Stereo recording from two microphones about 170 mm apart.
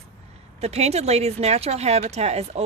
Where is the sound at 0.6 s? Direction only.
40° right (ahead or behind).